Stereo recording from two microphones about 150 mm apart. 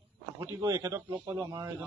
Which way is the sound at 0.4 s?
20° right (ahead or behind).